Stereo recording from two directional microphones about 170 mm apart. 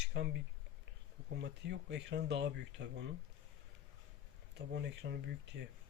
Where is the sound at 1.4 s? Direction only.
90° right.